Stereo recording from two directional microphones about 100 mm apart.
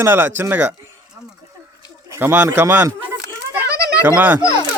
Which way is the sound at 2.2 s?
20° right (ahead or behind).